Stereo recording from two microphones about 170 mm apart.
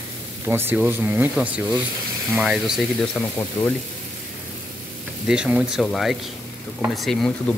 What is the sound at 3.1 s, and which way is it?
Speech, 15° left (ahead or behind).